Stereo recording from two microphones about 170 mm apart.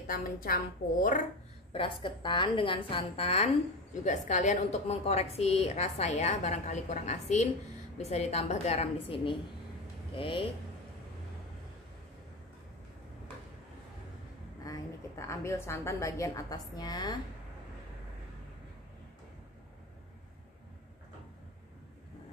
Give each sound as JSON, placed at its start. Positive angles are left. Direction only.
{"t": 0.0, "sound": "a woman's voice", "side_deg": 60}
{"t": 1.7, "sound": "a woman's voice", "side_deg": 30}
{"t": 14.6, "sound": "a woman's voice", "side_deg": 20}